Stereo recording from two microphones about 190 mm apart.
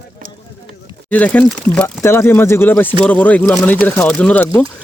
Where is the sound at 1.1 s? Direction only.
10° left (ahead or behind).